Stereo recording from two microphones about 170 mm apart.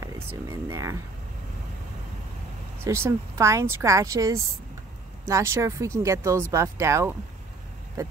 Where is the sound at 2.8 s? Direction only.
15° right (ahead or behind).